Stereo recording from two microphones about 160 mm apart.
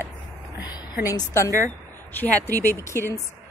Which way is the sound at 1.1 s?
20° left (ahead or behind).